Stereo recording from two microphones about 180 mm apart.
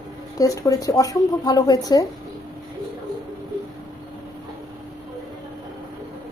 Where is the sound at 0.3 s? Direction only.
20° left (ahead or behind).